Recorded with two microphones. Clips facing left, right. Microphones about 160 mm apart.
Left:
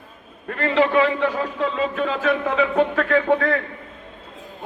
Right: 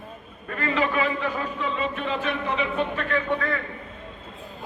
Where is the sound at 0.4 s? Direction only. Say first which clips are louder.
Left 6 dB; 70° left (ahead or behind); by 1.9 s 90° left.